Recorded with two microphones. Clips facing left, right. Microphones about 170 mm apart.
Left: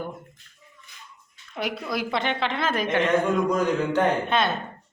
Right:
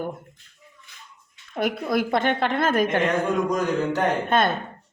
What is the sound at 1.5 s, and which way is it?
Speech, 50° right (ahead or behind).